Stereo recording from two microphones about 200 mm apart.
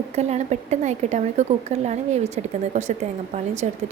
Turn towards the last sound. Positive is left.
turn(degrees=-35)  # may be behind; listen again after turning